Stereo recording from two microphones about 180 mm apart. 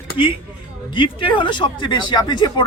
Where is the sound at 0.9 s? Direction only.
25° left (ahead or behind).